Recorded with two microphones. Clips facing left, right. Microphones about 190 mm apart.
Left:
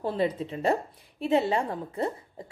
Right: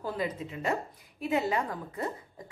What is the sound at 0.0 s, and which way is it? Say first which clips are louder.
A woman's voice: left 6 dB; 30° left (ahead or behind).